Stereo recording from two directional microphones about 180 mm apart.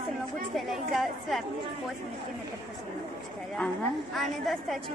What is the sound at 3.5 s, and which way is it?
A woman's voice, 5° left (ahead or behind).